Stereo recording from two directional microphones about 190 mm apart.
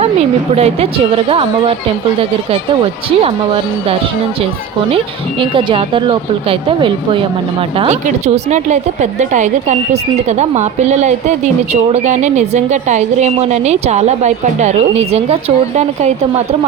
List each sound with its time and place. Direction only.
0.5 s speech: 30° right (ahead or behind)
3.2 s speech: 30° right (ahead or behind)
5.4 s a woman's voice: 25° right (ahead or behind)